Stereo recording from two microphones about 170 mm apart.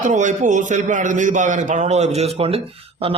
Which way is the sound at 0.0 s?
45° right (ahead or behind).